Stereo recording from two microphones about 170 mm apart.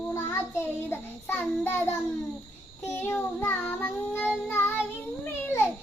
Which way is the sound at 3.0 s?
15° left (ahead or behind).